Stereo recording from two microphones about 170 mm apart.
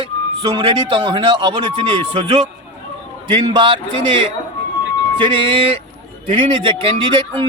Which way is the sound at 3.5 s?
30° right (ahead or behind).